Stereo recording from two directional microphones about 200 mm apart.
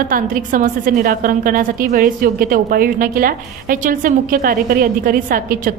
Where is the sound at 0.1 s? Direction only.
45° right (ahead or behind).